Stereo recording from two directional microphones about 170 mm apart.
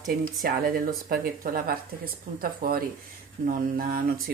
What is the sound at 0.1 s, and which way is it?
Speech, 60° right (ahead or behind).